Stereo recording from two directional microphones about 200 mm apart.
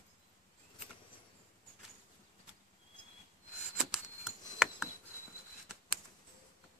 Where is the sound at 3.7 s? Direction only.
5° right (ahead or behind).